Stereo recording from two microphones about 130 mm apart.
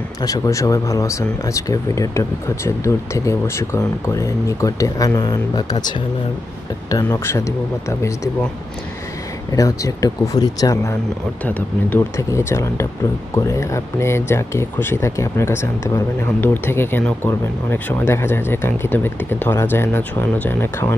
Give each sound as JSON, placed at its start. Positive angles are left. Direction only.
{"t": 0.2, "sound": "speech", "side_deg": 25}
{"t": 9.6, "sound": "speech", "side_deg": 25}